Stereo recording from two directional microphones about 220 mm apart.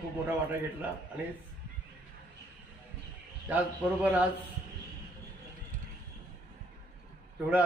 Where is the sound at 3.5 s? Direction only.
5° right (ahead or behind).